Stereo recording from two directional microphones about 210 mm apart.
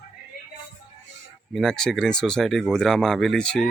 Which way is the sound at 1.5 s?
Centre (ahead or behind).